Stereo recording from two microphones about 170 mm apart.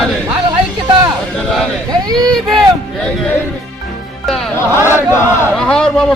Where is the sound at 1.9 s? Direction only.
25° right (ahead or behind).